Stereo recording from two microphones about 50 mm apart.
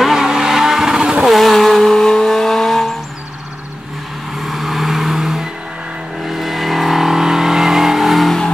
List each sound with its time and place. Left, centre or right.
0.0 s vehicle: centre
1.2 s vehicle: centre
4.4 s vehicle: centre